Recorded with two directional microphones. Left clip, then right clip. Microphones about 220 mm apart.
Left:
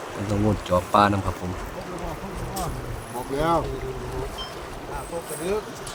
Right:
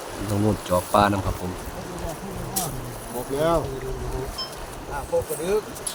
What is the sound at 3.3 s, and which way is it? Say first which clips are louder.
Speech: right 1 dB; 5° left (ahead or behind).